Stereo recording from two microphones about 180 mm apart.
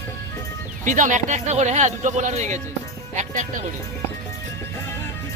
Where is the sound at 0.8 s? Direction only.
45° right (ahead or behind).